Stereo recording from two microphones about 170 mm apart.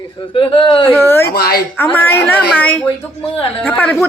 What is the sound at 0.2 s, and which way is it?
Speech, 30° left (ahead or behind).